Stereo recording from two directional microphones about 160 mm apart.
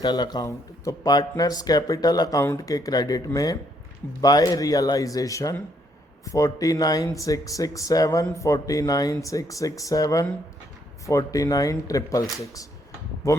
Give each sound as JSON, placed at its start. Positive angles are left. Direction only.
{"t": 0.0, "sound": "speech", "side_deg": 25}
{"t": 13.2, "sound": "speech", "side_deg": 20}